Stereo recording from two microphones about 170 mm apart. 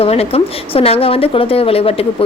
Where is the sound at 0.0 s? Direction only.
35° left (ahead or behind).